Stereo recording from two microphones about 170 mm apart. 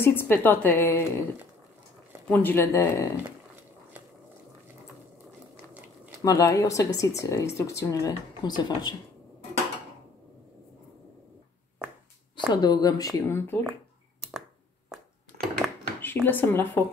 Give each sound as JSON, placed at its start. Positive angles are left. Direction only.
{"t": 0.0, "sound": "a woman's voice", "side_deg": 15}
{"t": 2.2, "sound": "a woman's voice", "side_deg": 10}
{"t": 6.2, "sound": "speech", "side_deg": 20}
{"t": 12.4, "sound": "speech", "side_deg": 25}
{"t": 15.5, "sound": "a sound", "side_deg": 10}